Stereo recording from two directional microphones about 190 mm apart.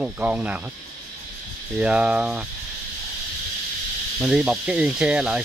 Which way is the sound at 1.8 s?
5° right (ahead or behind).